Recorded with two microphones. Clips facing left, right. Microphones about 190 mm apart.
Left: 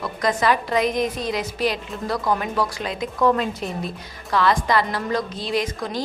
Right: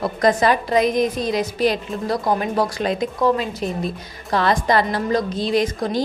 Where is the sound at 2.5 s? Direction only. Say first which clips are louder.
Right 5 dB; 40° right (ahead or behind).